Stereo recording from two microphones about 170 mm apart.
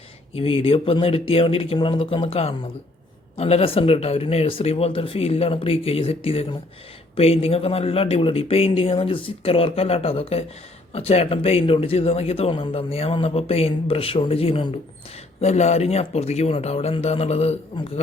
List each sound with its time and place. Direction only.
0.3 s speech: 35° left (ahead or behind)